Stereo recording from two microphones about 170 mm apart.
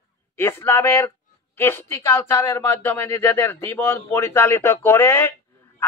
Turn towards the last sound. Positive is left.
turn(degrees=15)  # may be behind; listen again after turning